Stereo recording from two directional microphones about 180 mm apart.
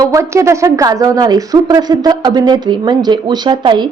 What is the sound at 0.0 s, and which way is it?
A woman's voice, 15° right (ahead or behind).